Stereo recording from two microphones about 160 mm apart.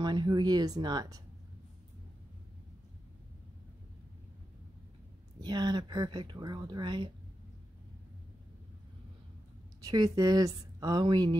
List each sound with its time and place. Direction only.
0.0 s speech: 30° right (ahead or behind)
5.4 s speech: 25° right (ahead or behind)
9.8 s speech: 25° right (ahead or behind)